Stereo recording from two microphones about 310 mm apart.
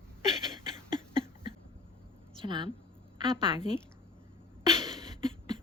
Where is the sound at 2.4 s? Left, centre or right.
Centre.